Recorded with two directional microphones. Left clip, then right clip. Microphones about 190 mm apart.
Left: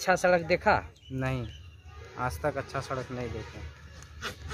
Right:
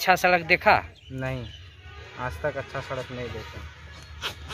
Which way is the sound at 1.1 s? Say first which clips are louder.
Right 1 dB; 25° left (ahead or behind).